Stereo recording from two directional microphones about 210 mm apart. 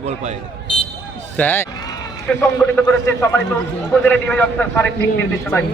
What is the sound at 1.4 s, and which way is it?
A man's voice, 10° left (ahead or behind).